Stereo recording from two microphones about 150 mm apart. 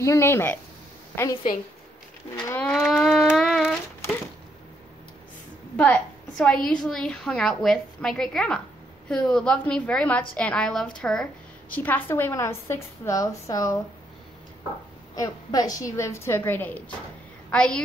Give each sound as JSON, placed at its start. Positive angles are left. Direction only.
{"t": 0.0, "sound": "a woman's voice", "side_deg": 20}
{"t": 2.4, "sound": "a woman's voice", "side_deg": 15}
{"t": 2.7, "sound": "a sound", "side_deg": 0}
{"t": 5.8, "sound": "a woman's voice", "side_deg": 5}
{"t": 15.1, "sound": "a woman's voice", "side_deg": 25}